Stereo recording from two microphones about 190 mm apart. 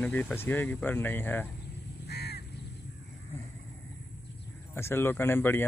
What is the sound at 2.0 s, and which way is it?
Crow, 60° left (ahead or behind).